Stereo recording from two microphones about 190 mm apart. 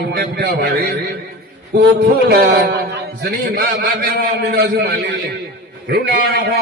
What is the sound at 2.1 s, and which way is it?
A man's voice, 55° right (ahead or behind).